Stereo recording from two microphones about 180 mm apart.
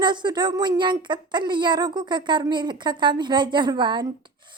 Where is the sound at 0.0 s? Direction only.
25° right (ahead or behind).